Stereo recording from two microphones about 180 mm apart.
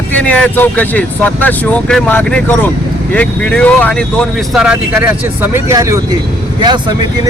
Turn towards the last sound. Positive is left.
turn(degrees=-25)  # may be behind; listen again after turning